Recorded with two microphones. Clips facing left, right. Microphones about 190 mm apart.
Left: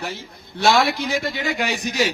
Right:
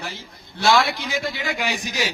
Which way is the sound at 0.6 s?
50° left (ahead or behind).